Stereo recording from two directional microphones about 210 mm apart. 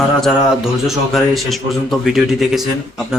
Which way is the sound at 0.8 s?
Centre (ahead or behind).